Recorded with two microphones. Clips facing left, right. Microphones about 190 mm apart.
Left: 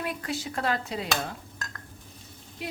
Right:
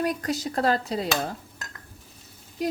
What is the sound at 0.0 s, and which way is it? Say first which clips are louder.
Speech: right 6 dB; 40° right (ahead or behind).